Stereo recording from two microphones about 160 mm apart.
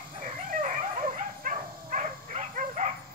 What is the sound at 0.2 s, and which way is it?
Dog, 55° right (ahead or behind).